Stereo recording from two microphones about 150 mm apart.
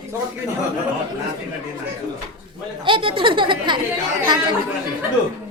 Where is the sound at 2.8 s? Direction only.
35° right (ahead or behind).